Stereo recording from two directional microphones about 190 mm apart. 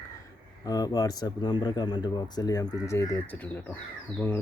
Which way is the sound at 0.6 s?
20° left (ahead or behind).